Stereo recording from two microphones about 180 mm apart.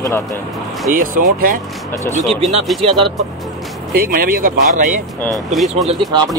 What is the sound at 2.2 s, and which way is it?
Speech, 35° right (ahead or behind).